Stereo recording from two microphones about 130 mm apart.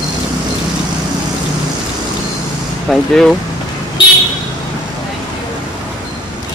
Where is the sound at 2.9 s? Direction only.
5° left (ahead or behind).